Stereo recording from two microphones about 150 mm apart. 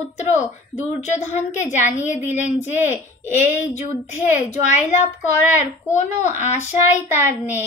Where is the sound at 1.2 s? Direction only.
50° left (ahead or behind).